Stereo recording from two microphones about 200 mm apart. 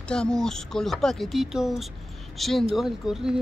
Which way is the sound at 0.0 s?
5° left (ahead or behind).